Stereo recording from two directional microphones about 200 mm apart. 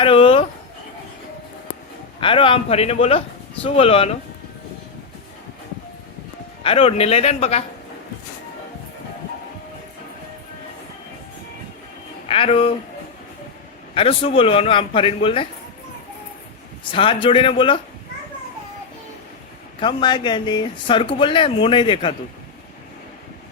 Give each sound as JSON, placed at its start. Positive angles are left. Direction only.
{"t": 0.0, "sound": "a sound", "side_deg": 25}
{"t": 2.2, "sound": "speech", "side_deg": 25}
{"t": 6.6, "sound": "a man's voice", "side_deg": 30}
{"t": 12.3, "sound": "speech", "side_deg": 25}
{"t": 13.9, "sound": "speech", "side_deg": 30}
{"t": 16.8, "sound": "speech", "side_deg": 25}
{"t": 19.8, "sound": "speech", "side_deg": 20}